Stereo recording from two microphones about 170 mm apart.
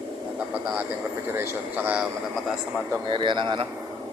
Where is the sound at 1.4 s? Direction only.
10° right (ahead or behind).